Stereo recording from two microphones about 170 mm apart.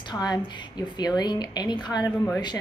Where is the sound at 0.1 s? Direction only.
25° left (ahead or behind).